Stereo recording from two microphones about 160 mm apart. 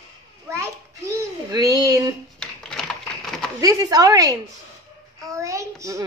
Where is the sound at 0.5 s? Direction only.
15° right (ahead or behind).